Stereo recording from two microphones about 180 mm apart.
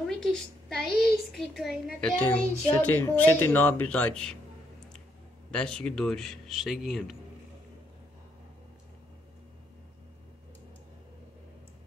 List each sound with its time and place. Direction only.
0.2 s a woman's voice: 5° left (ahead or behind)
5.5 s a woman's voice: 5° left (ahead or behind)